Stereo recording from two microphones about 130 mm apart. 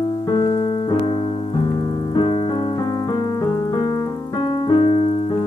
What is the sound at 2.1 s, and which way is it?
Keyboard, 40° left (ahead or behind).